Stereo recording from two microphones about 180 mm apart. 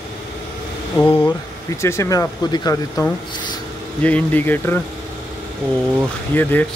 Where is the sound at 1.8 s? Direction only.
15° left (ahead or behind).